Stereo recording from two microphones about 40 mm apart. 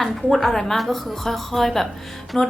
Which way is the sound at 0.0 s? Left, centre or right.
Centre.